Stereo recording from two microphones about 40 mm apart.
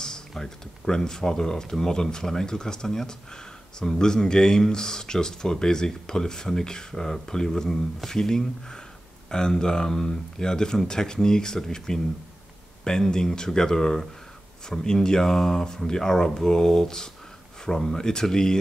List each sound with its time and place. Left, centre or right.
0.3 s speech: centre